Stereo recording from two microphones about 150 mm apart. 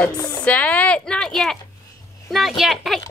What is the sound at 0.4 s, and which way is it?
A woman's voice, 10° left (ahead or behind).